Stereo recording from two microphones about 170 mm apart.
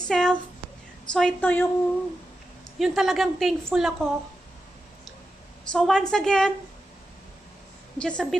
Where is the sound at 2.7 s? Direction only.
Centre (ahead or behind).